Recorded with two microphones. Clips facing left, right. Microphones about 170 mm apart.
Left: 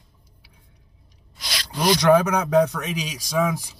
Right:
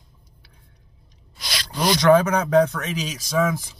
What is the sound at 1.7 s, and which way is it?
A man's voice, 10° left (ahead or behind).